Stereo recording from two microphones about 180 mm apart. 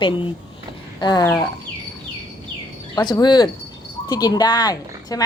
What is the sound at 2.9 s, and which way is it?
A woman's voice, 25° left (ahead or behind).